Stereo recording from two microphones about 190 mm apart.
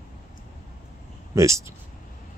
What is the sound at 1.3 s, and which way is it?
Speech, 15° right (ahead or behind).